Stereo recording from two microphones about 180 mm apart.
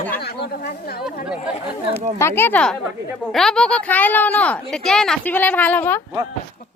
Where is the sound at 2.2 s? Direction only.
15° left (ahead or behind).